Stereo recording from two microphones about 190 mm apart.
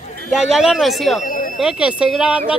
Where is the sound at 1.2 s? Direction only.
45° left (ahead or behind).